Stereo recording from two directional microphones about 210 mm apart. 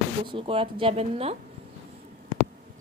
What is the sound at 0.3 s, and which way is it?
Speech, 25° right (ahead or behind).